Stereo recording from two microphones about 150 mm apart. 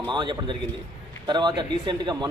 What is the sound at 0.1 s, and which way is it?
A man's voice, 30° right (ahead or behind).